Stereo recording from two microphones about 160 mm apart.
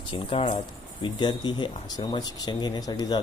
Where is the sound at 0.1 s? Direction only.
35° left (ahead or behind).